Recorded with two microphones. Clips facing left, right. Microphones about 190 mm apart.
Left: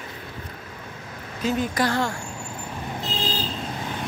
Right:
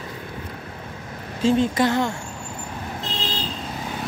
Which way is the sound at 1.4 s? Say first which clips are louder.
Right 5 dB; 25° right (ahead or behind).